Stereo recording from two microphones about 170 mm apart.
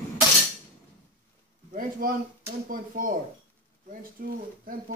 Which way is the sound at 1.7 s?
55° right (ahead or behind).